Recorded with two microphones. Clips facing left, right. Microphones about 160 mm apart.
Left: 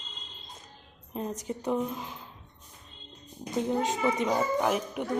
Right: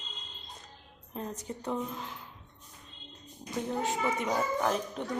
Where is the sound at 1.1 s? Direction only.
20° left (ahead or behind).